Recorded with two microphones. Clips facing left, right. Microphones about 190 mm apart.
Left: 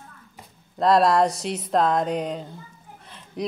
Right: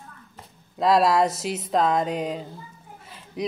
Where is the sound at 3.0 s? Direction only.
5° right (ahead or behind).